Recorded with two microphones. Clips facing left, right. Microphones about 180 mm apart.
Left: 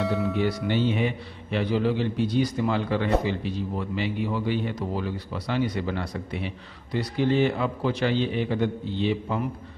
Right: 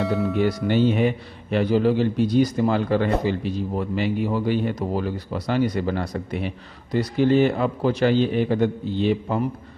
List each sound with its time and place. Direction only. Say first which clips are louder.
0.0 s music: right 3 dB; centre (ahead or behind)
0.7 s a man's voice: right 5 dB; 45° right (ahead or behind)